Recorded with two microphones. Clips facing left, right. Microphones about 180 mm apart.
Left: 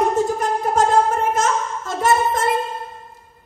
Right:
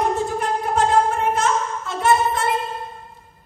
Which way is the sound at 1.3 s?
40° left (ahead or behind).